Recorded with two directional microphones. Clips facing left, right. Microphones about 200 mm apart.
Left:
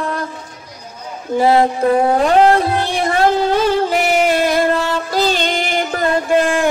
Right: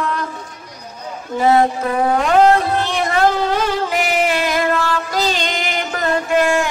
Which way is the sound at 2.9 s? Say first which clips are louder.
Left 2 dB; 30° left (ahead or behind).